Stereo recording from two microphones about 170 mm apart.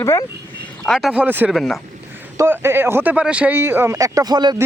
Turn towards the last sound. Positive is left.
turn(degrees=-25)  # may be behind; listen again after turning